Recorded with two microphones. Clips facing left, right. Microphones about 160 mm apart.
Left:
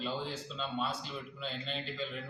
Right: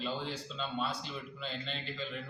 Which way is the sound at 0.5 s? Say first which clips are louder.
Even; centre (ahead or behind).